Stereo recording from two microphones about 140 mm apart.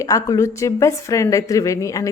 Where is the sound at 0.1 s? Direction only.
25° left (ahead or behind).